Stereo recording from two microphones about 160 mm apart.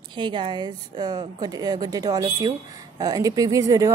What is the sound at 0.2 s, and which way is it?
Speech, 30° right (ahead or behind).